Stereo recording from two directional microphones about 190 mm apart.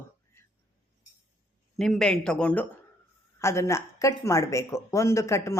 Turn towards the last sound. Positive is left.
turn(degrees=15)  # may be behind; listen again after turning